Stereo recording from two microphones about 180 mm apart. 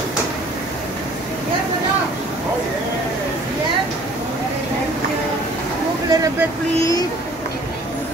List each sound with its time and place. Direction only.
6.0 s vehicle: 20° right (ahead or behind)